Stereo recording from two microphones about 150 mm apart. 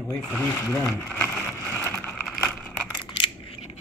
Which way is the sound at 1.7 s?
15° left (ahead or behind).